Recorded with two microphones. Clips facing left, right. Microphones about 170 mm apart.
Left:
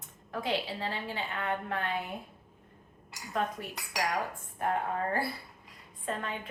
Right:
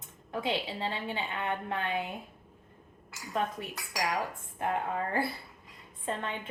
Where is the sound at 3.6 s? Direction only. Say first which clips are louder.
Right 1 dB; 25° right (ahead or behind).